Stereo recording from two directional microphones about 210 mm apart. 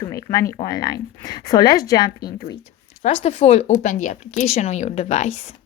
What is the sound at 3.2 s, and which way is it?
A woman's voice, 30° left (ahead or behind).